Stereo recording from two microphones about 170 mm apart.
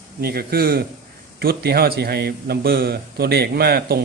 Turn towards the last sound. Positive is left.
turn(degrees=-65)  # may be behind; listen again after turning